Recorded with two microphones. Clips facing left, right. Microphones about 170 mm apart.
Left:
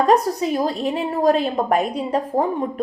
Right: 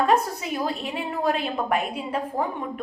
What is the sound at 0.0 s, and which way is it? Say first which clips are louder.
A woman's voice: left 5 dB; 40° left (ahead or behind).